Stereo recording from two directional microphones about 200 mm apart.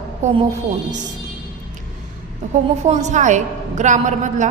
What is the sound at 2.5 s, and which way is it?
A woman's voice, 35° right (ahead or behind).